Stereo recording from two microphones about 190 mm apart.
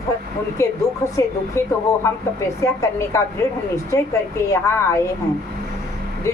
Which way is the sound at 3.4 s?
15° left (ahead or behind).